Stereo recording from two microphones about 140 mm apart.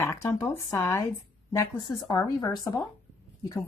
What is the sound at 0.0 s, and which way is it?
Speech, 20° left (ahead or behind).